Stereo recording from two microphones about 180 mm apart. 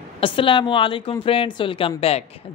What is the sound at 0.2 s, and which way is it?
A woman's voice, 30° left (ahead or behind).